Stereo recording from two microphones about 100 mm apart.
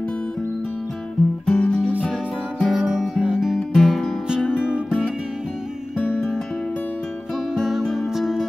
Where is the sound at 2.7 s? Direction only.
10° right (ahead or behind).